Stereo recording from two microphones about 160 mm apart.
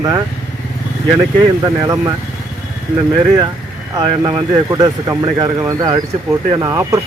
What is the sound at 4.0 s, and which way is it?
Speech, 35° right (ahead or behind).